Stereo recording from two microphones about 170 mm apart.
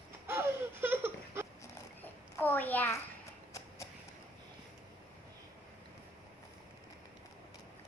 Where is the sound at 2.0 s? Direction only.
10° left (ahead or behind).